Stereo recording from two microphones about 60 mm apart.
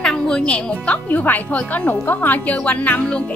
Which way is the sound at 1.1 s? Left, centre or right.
Left.